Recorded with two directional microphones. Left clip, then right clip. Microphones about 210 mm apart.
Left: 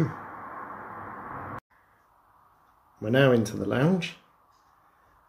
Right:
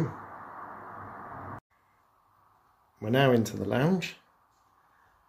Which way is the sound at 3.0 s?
20° right (ahead or behind).